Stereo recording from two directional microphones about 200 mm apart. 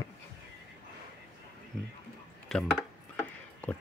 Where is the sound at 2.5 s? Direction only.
Centre (ahead or behind).